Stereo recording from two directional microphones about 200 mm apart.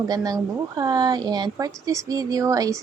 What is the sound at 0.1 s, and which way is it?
A woman's voice, 20° right (ahead or behind).